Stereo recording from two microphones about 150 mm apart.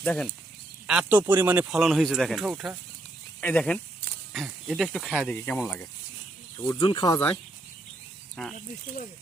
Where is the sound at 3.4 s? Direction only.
10° left (ahead or behind).